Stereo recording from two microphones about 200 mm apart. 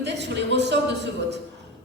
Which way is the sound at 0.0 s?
60° right (ahead or behind).